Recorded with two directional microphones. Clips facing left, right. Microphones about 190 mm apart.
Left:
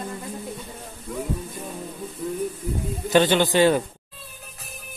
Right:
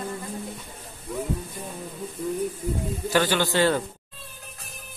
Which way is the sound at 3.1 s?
20° left (ahead or behind).